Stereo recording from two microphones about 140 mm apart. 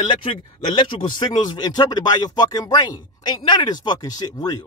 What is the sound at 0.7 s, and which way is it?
A man's voice, 35° left (ahead or behind).